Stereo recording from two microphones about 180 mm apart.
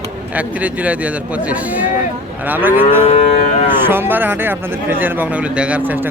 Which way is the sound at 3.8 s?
10° right (ahead or behind).